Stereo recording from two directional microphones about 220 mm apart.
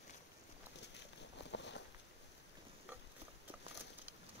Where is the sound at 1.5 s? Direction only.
55° left (ahead or behind).